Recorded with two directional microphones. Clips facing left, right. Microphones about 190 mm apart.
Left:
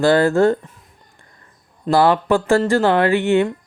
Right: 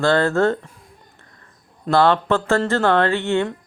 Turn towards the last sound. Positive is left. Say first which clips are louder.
# left 4 dB
turn(degrees=15)  # may be behind; listen again after turning